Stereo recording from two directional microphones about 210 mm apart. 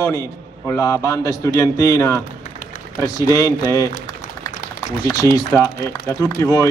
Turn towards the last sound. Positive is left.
turn(degrees=15)  # may be behind; listen again after turning